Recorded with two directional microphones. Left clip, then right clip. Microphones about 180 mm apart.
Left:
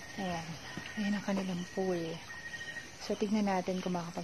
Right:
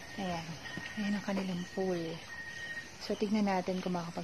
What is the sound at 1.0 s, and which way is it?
Speech, 25° left (ahead or behind).